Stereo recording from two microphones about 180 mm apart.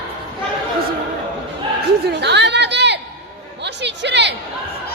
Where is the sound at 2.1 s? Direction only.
75° right (ahead or behind).